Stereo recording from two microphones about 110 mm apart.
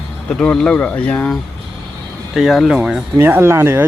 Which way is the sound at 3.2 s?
20° right (ahead or behind).